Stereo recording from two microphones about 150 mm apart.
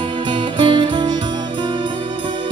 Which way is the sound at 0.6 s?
30° right (ahead or behind).